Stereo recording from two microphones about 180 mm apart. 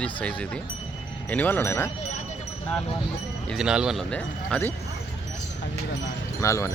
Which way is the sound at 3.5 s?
5° right (ahead or behind).